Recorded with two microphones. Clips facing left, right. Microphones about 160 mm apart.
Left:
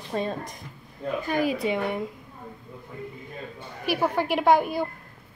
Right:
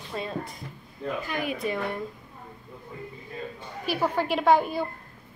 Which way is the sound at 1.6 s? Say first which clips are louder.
Left 3 dB; 20° left (ahead or behind).